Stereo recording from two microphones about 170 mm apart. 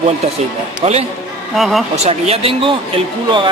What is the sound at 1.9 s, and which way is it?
Speech, 40° right (ahead or behind).